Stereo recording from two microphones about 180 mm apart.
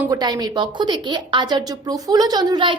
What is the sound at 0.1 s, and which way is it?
A woman's voice, 20° right (ahead or behind).